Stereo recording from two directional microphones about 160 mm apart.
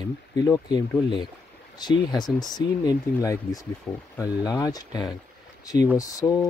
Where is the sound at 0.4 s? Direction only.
25° left (ahead or behind).